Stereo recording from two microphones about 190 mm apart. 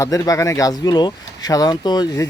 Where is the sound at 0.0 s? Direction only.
15° left (ahead or behind).